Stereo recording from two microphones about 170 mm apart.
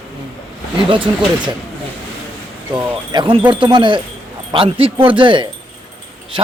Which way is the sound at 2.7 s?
25° right (ahead or behind).